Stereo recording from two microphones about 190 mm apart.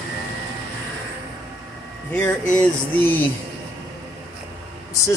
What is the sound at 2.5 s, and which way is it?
Music, 10° left (ahead or behind).